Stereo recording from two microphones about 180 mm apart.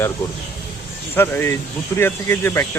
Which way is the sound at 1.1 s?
10° left (ahead or behind).